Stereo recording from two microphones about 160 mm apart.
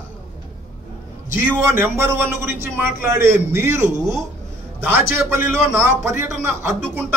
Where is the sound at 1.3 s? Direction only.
15° right (ahead or behind).